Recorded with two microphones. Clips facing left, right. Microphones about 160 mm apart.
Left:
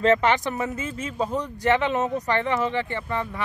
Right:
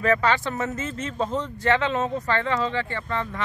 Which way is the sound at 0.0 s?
25° left (ahead or behind).